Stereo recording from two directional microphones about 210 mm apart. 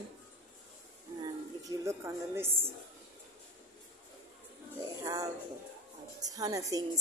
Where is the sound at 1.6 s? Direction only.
15° right (ahead or behind).